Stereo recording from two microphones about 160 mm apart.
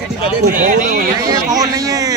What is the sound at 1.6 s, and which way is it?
Speech, 20° right (ahead or behind).